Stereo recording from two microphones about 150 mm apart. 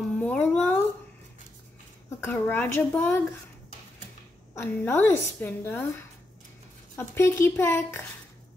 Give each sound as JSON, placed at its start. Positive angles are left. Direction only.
{"t": 0.2, "sound": "a sound", "side_deg": 10}
{"t": 2.0, "sound": "a woman's voice", "side_deg": 15}
{"t": 4.6, "sound": "a woman's voice", "side_deg": 15}